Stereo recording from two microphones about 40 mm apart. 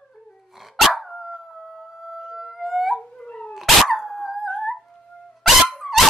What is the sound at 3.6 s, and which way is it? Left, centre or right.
Dog, centre.